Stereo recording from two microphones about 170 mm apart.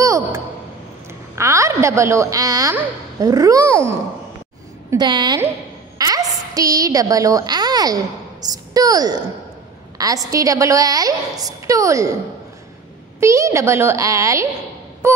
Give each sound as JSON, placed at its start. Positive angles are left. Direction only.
{"t": 0.0, "sound": "a sound", "side_deg": -20}
{"t": 1.3, "sound": "a woman's voice", "side_deg": -15}
{"t": 4.9, "sound": "a woman's voice", "side_deg": -25}
{"t": 5.9, "sound": "a sound", "side_deg": -20}
{"t": 8.5, "sound": "a woman's voice", "side_deg": -20}
{"t": 13.2, "sound": "a woman's voice", "side_deg": -15}